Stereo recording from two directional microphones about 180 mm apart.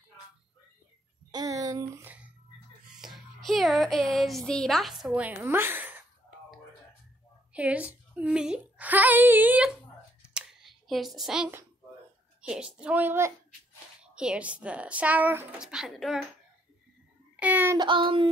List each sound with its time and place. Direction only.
1.3 s a sound: 20° right (ahead or behind)
2.0 s speech: 10° right (ahead or behind)
3.0 s speech: centre (ahead or behind)
7.5 s a woman's voice: 5° right (ahead or behind)
10.2 s a sound: 5° right (ahead or behind)
12.4 s a woman's voice: 5° right (ahead or behind)
17.4 s child singing: 10° right (ahead or behind)
17.7 s child singing: 25° right (ahead or behind)